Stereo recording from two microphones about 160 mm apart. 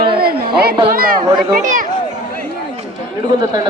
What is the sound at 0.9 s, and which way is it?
Speech, 65° right (ahead or behind).